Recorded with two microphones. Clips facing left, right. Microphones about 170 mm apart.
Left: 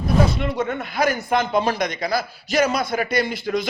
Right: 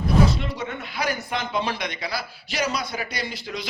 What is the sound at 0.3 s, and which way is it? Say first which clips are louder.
A man's voice: left 5 dB; 55° left (ahead or behind).